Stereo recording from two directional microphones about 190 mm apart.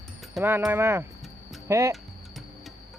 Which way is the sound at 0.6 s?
10° right (ahead or behind).